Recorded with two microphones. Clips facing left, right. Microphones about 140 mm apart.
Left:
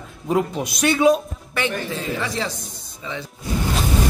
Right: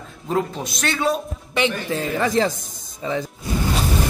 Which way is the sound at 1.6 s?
20° right (ahead or behind).